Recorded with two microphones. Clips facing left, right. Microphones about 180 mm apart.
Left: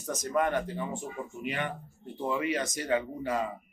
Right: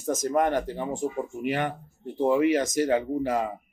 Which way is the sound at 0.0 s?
45° right (ahead or behind).